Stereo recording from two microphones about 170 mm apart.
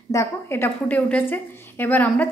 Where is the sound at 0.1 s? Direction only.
15° left (ahead or behind).